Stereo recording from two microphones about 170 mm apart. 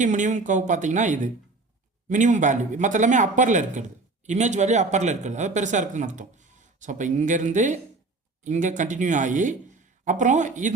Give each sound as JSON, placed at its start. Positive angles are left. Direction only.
{"t": 0.0, "sound": "speech", "side_deg": -45}